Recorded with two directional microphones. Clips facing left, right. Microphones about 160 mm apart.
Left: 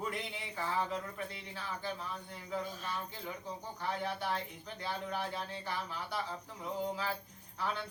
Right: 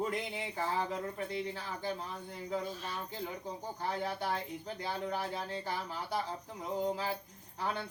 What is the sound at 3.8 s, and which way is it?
Speech, 40° right (ahead or behind).